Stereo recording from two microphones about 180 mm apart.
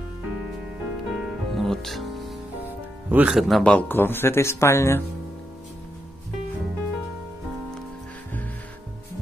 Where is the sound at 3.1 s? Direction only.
5° right (ahead or behind); by 5.0 s 15° left (ahead or behind).